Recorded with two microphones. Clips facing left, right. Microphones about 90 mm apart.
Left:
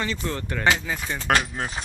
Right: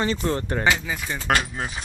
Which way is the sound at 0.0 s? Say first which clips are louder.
Right 5 dB; 30° right (ahead or behind).